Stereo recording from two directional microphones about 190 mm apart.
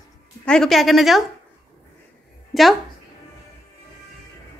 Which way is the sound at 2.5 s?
Centre (ahead or behind).